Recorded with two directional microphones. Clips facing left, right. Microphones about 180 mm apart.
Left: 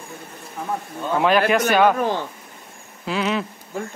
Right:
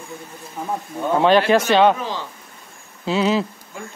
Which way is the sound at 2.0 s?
55° left (ahead or behind).